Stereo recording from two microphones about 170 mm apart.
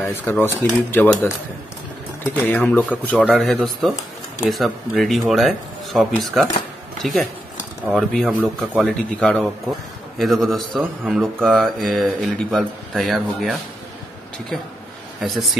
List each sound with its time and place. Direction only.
0.1 s a man's voice: 15° left (ahead or behind)
15.1 s speech: centre (ahead or behind)